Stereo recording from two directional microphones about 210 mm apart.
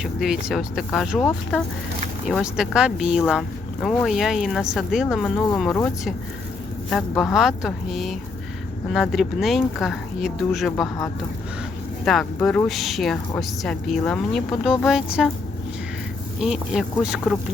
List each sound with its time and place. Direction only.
0.0 s a woman's voice: centre (ahead or behind)
2.2 s a woman's voice: centre (ahead or behind)
7.2 s a woman's voice: centre (ahead or behind)
16.4 s a woman's voice: centre (ahead or behind)